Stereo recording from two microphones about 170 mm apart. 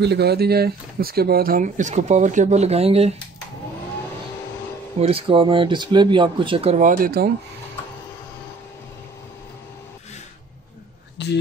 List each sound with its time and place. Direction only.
0.0 s speech: 75° right (ahead or behind); by 3.2 s 35° right (ahead or behind)
5.0 s speech: 35° right (ahead or behind); by 7.2 s 60° right (ahead or behind)